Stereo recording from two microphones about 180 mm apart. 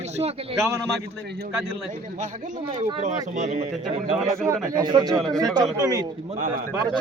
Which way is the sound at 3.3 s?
40° right (ahead or behind).